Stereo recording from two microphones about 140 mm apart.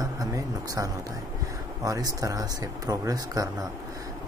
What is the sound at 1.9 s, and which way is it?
Speech, 25° right (ahead or behind).